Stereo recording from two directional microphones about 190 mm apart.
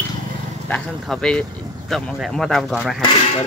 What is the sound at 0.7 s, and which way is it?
Speech, 5° left (ahead or behind).